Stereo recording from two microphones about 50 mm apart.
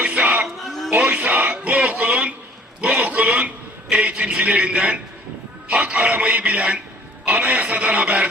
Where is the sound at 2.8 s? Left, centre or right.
Right.